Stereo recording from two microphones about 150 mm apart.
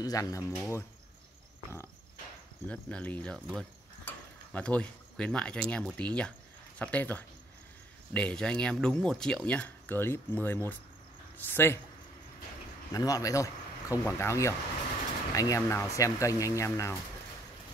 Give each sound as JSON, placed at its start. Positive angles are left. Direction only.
{"t": 0.0, "sound": "speech", "side_deg": 25}
{"t": 2.7, "sound": "speech", "side_deg": 10}
{"t": 12.9, "sound": "speech", "side_deg": 25}